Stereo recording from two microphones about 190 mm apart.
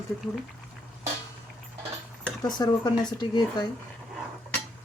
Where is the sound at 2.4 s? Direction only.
20° left (ahead or behind).